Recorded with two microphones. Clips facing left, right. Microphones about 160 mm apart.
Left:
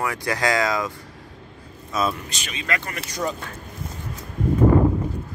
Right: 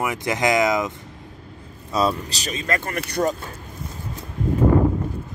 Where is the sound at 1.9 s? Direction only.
35° right (ahead or behind).